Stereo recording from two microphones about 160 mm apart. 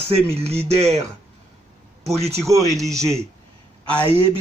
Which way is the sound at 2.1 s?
40° right (ahead or behind).